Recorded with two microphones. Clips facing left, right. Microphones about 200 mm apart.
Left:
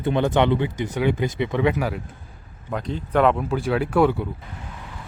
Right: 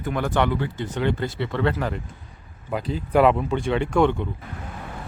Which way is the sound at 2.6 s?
5° right (ahead or behind).